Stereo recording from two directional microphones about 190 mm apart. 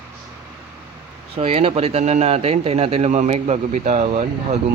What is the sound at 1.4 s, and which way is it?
A man's voice, 30° right (ahead or behind).